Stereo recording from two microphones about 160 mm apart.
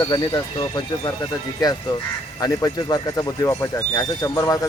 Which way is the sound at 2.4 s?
25° left (ahead or behind).